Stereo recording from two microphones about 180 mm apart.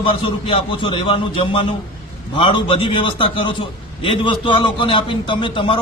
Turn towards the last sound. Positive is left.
turn(degrees=30)  # may be behind; listen again after turning